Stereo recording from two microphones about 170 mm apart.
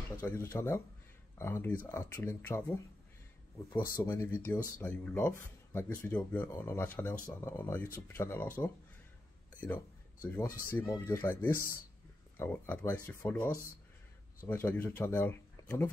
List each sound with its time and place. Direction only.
0.2 s speech: 10° left (ahead or behind)
10.2 s speech: 15° left (ahead or behind)